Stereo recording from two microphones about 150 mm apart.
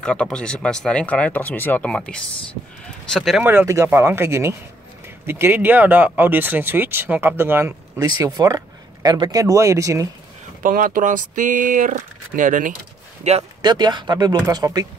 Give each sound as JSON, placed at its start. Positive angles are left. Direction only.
{"t": 0.0, "sound": "speech", "side_deg": 5}
{"t": 3.4, "sound": "speech", "side_deg": -15}
{"t": 10.6, "sound": "speech", "side_deg": -65}
{"t": 13.2, "sound": "speech", "side_deg": -45}
{"t": 13.6, "sound": "speech", "side_deg": -30}